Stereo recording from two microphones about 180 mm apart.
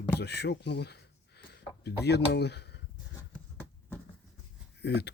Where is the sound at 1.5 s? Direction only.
65° left (ahead or behind).